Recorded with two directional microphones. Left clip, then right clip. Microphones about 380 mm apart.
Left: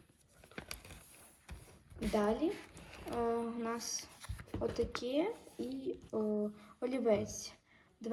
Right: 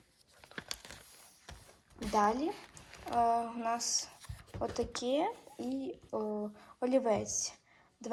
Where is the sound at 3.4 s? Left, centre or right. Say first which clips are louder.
Right 5 dB; centre.